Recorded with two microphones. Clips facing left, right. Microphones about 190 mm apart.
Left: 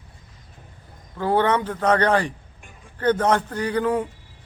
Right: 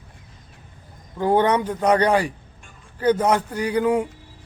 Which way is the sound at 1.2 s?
15° right (ahead or behind).